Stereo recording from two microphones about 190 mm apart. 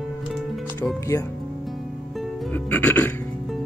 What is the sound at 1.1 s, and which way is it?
Speech, 10° left (ahead or behind).